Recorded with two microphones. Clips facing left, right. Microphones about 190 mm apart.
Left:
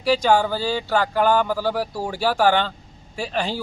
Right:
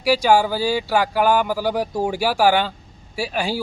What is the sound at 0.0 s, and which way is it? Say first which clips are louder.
Speech: right 2 dB; 10° right (ahead or behind).